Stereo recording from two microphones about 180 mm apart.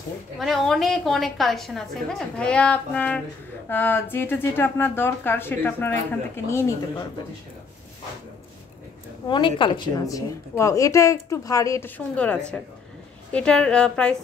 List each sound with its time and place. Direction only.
0.4 s a woman's voice: centre (ahead or behind)
9.3 s a woman's voice: 25° left (ahead or behind); by 14.1 s 5° left (ahead or behind)